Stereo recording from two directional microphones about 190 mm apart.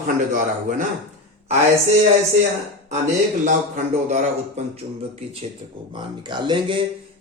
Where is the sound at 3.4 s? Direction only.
40° right (ahead or behind).